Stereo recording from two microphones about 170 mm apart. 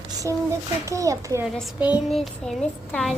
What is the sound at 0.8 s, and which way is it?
Speech, 20° right (ahead or behind).